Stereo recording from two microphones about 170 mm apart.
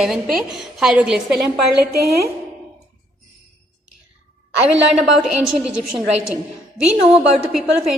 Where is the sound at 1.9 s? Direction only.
65° right (ahead or behind).